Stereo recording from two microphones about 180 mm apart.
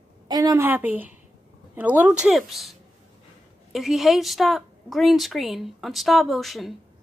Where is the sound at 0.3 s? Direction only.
20° right (ahead or behind).